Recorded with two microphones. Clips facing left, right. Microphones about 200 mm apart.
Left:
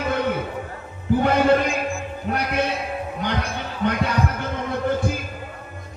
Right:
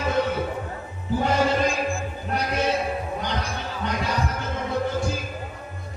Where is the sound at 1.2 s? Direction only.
60° left (ahead or behind).